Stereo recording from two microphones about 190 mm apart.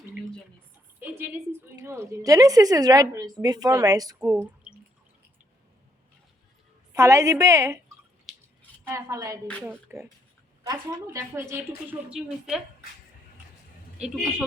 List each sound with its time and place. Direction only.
1.2 s a woman's voice: 10° right (ahead or behind)
4.3 s speech: 10° right (ahead or behind)
6.9 s speech: 15° right (ahead or behind)
8.3 s a sound: centre (ahead or behind)
8.9 s speech: 15° right (ahead or behind)
12.0 s a woman's voice: 5° right (ahead or behind)